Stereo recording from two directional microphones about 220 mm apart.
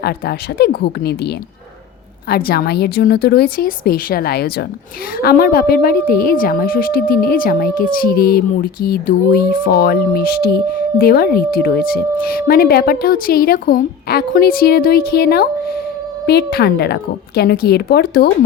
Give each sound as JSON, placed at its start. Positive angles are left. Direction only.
{"t": 0.0, "sound": "a woman's voice", "side_deg": 45}